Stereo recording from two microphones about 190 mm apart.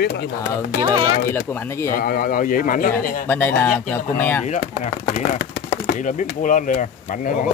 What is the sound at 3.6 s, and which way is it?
Speech, 10° left (ahead or behind).